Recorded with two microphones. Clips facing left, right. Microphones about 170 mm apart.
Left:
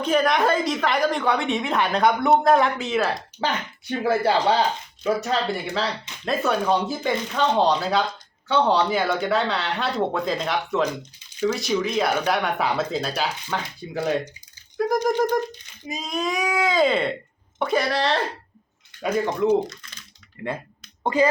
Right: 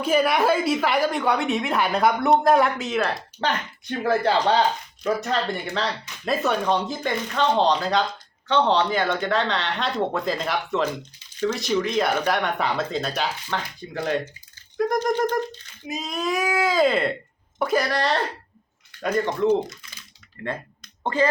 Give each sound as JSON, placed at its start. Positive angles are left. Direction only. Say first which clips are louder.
{"t": 0.0, "sound": "a woman's voice", "louder": "even", "side_deg": -5}
{"t": 21.0, "sound": "speech", "louder": "left 2 dB", "side_deg": 15}